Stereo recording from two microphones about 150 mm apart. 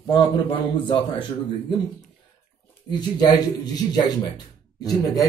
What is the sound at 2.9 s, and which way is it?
Speech, 25° left (ahead or behind).